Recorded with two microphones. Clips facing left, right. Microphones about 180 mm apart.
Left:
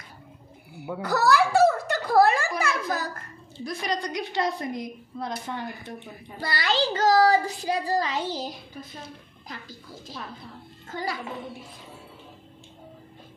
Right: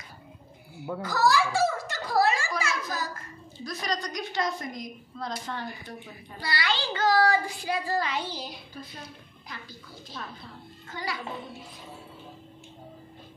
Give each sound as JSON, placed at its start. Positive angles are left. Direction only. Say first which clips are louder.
{"t": 1.0, "sound": "a sound", "louder": "left 3 dB", "side_deg": 65}
{"t": 3.6, "sound": "a woman's voice", "louder": "left 3 dB", "side_deg": 25}
{"t": 5.5, "sound": "speech", "louder": "left 2 dB", "side_deg": 15}
{"t": 6.4, "sound": "a child's voice", "louder": "left 5 dB", "side_deg": 45}
{"t": 10.9, "sound": "a child's voice", "louder": "left 4 dB", "side_deg": 45}